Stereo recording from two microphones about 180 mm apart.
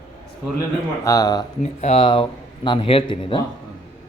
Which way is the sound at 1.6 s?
35° left (ahead or behind).